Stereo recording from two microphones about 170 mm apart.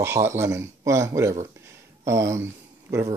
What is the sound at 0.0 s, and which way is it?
Speech, 15° right (ahead or behind).